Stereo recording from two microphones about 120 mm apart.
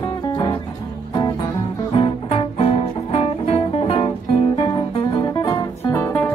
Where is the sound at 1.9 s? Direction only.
50° left (ahead or behind).